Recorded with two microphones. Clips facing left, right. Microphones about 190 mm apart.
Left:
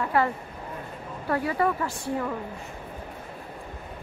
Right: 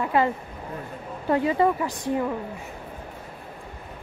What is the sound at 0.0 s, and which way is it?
Speech, 20° right (ahead or behind).